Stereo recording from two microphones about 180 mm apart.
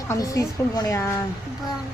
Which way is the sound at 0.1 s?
20° left (ahead or behind).